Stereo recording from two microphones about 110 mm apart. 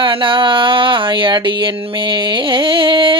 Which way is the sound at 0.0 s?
50° right (ahead or behind).